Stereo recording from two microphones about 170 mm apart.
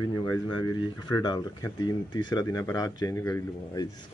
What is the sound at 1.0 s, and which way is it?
Speech, 25° left (ahead or behind).